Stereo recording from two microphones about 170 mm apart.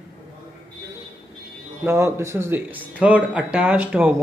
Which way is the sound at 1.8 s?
15° right (ahead or behind).